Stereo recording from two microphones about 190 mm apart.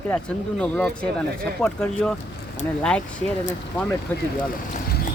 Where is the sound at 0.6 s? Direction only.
5° left (ahead or behind).